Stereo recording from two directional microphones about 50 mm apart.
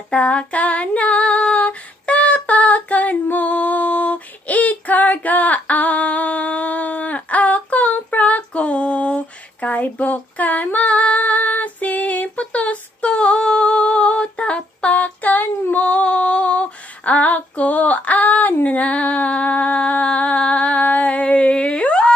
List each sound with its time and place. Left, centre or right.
0.1 s female singing: left